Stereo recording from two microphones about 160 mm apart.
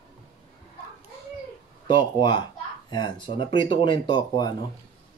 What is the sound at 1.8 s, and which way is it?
Speech, 30° left (ahead or behind).